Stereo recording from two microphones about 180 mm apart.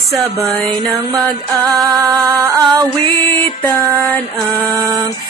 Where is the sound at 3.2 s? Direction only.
10° left (ahead or behind).